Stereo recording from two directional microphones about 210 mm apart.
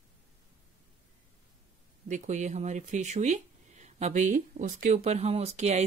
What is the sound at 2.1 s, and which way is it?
Speech, 35° right (ahead or behind).